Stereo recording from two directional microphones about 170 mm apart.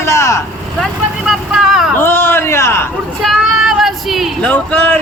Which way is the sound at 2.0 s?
15° left (ahead or behind).